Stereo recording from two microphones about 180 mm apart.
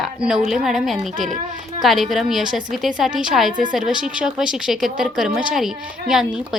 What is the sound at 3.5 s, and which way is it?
Speech, 45° right (ahead or behind).